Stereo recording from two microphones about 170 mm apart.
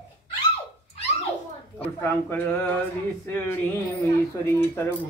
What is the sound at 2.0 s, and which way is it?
Speech, 10° left (ahead or behind).